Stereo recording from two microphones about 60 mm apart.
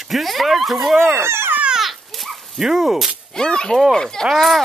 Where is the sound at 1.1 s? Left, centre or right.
Right.